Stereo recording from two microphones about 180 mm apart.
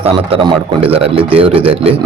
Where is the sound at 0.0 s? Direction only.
30° right (ahead or behind).